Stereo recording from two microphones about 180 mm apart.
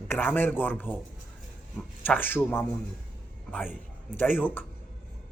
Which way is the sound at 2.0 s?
10° left (ahead or behind).